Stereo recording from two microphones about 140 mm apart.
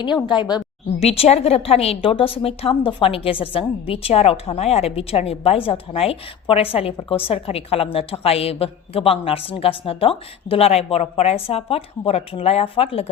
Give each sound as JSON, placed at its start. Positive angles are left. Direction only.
{"t": 0.3, "sound": "a woman's voice", "side_deg": 30}
{"t": 0.9, "sound": "speech", "side_deg": 45}